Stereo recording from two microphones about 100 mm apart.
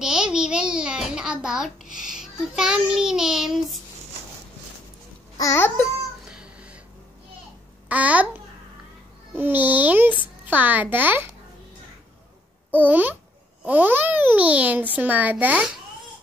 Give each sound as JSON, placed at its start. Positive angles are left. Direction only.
{"t": 0.0, "sound": "a child's voice", "side_deg": -5}
{"t": 5.4, "sound": "speech", "side_deg": 30}
{"t": 6.2, "sound": "cat", "side_deg": -10}
{"t": 7.9, "sound": "a child's voice", "side_deg": -15}
{"t": 12.8, "sound": "a child's voice", "side_deg": -20}